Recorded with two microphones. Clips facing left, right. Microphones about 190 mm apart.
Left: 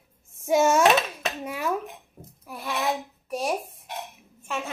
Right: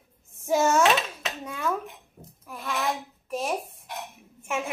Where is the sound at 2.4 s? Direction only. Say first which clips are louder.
Left 1 dB; 15° left (ahead or behind).